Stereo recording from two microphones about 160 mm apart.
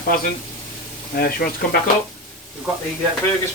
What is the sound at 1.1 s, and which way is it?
Speech, 70° left (ahead or behind).